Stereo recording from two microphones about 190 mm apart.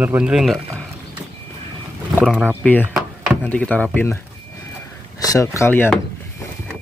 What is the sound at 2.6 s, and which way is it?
Speech, 10° left (ahead or behind).